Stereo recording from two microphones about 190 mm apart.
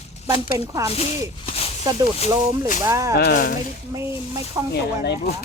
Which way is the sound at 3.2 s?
55° left (ahead or behind).